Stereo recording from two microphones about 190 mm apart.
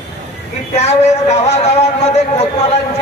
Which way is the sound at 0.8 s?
35° left (ahead or behind).